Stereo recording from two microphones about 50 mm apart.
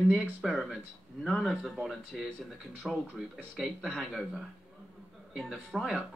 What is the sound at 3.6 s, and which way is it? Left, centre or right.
Speech, centre.